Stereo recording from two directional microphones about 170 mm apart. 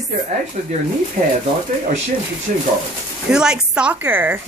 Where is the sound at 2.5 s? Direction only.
50° right (ahead or behind).